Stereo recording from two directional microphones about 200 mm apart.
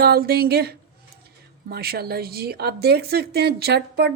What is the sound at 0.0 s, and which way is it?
A woman's voice, 50° right (ahead or behind).